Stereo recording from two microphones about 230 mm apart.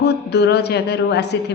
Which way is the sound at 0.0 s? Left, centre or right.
Left.